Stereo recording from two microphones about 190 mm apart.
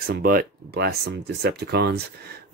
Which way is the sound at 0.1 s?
50° right (ahead or behind).